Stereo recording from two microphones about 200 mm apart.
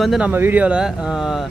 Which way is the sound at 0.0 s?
5° right (ahead or behind).